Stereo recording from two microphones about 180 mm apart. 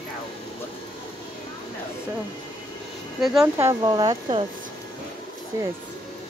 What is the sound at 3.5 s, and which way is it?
Speech, 20° right (ahead or behind).